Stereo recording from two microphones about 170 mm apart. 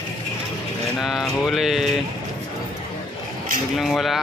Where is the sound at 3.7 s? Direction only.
Centre (ahead or behind).